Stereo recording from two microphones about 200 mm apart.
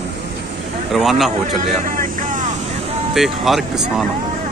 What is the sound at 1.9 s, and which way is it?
Vehicle, 40° right (ahead or behind).